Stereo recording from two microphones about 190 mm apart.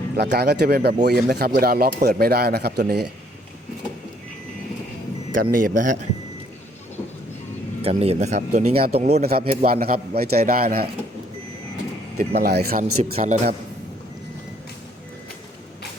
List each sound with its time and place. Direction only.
0.2 s speech: 55° right (ahead or behind)
5.3 s speech: 45° right (ahead or behind)
7.8 s speech: 30° right (ahead or behind)
9.3 s speech: 50° right (ahead or behind)
12.1 s speech: 55° right (ahead or behind)
13.1 s speech: 40° right (ahead or behind)